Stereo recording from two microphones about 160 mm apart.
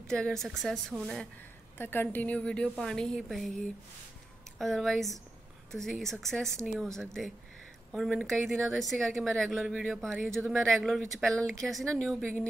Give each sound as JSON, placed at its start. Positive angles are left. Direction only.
{"t": 0.0, "sound": "a woman's voice", "side_deg": 5}
{"t": 1.8, "sound": "a woman's voice", "side_deg": 15}